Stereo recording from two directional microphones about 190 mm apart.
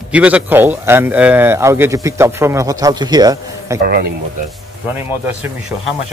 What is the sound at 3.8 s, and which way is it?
Speech, 55° right (ahead or behind).